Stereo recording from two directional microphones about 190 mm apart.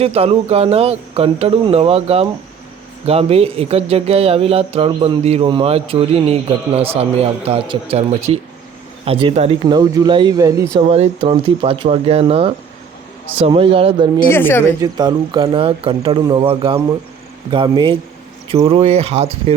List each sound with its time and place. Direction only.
0.0 s speech: 30° right (ahead or behind)
10.8 s speech: 30° right (ahead or behind)
14.3 s a woman's voice: 10° left (ahead or behind)
14.8 s speech: 20° right (ahead or behind)